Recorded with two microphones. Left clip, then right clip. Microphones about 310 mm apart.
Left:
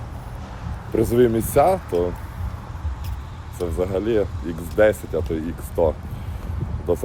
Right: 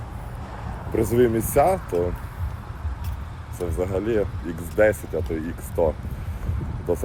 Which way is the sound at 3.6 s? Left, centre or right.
Centre.